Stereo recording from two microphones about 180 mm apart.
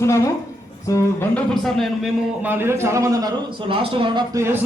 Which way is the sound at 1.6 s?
Centre (ahead or behind).